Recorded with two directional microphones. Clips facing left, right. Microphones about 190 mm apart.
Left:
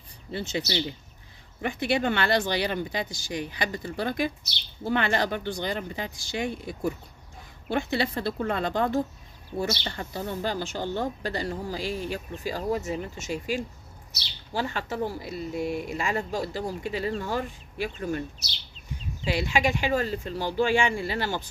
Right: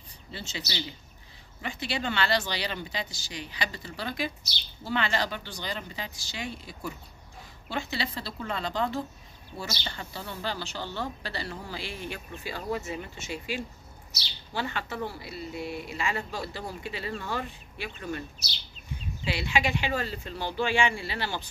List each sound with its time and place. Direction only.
0.3 s speech: 55° left (ahead or behind)
19.2 s speech: 45° left (ahead or behind)